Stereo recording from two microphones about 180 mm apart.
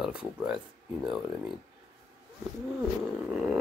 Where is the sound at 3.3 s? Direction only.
5° right (ahead or behind).